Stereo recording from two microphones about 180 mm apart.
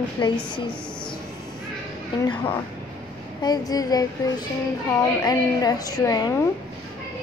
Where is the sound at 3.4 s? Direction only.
20° left (ahead or behind).